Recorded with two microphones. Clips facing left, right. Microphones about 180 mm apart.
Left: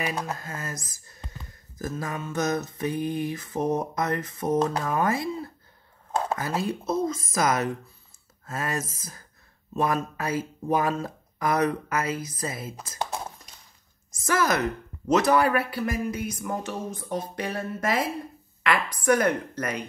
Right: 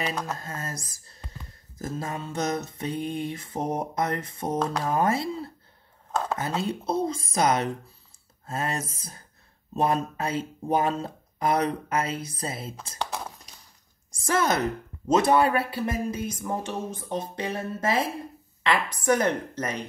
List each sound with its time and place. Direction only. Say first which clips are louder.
0.0 s speech: even; 10° left (ahead or behind)
0.4 s speech: even; 25° right (ahead or behind)
14.1 s a woman's voice: even; 30° right (ahead or behind)